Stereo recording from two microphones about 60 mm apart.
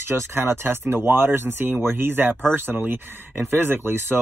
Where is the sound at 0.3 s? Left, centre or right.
Right.